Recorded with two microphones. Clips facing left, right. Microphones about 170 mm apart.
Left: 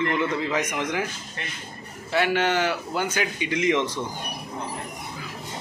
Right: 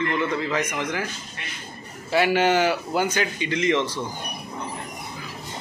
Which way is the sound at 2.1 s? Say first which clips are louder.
Right 3 dB; 5° right (ahead or behind).